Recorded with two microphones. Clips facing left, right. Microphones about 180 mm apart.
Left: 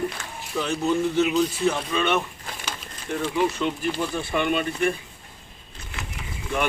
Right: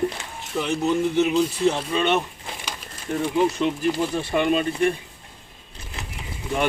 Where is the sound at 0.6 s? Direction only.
15° right (ahead or behind).